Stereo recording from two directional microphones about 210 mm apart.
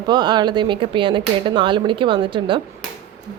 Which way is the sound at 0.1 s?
20° right (ahead or behind).